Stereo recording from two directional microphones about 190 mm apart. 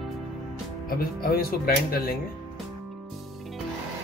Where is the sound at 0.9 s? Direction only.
50° left (ahead or behind).